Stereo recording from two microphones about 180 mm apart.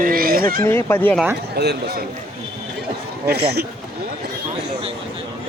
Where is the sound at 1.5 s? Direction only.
65° right (ahead or behind).